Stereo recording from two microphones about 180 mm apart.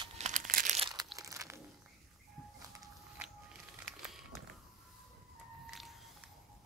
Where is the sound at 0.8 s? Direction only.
25° right (ahead or behind).